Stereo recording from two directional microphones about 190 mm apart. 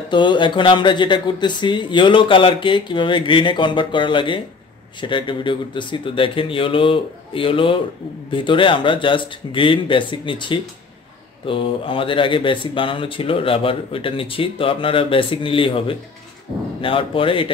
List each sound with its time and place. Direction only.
0.1 s speech: 25° left (ahead or behind)